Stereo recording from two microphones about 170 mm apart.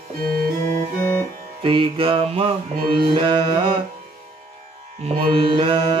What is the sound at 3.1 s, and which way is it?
Music, 30° right (ahead or behind).